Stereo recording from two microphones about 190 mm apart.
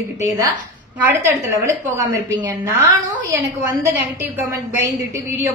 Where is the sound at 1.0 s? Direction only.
10° right (ahead or behind).